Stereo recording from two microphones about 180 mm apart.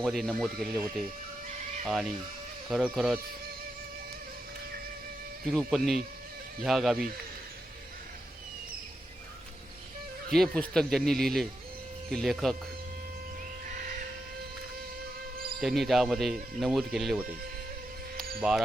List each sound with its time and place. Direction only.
0.0 s speech: centre (ahead or behind)
1.9 s speech: centre (ahead or behind)
5.5 s speech: centre (ahead or behind)
10.3 s speech: 5° left (ahead or behind)
15.6 s speech: centre (ahead or behind)
18.3 s speech: 5° right (ahead or behind)